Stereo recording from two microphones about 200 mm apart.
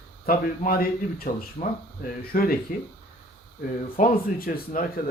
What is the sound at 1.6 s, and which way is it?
Speech, 35° left (ahead or behind).